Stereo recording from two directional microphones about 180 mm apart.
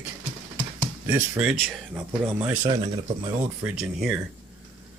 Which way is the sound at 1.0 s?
10° right (ahead or behind).